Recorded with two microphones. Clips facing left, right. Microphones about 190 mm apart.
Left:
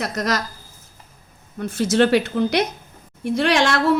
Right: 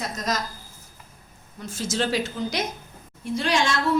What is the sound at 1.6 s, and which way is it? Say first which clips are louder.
A woman's voice: left 10 dB; 60° left (ahead or behind).